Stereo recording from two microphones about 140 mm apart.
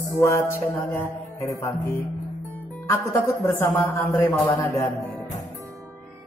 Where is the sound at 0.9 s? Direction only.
15° left (ahead or behind).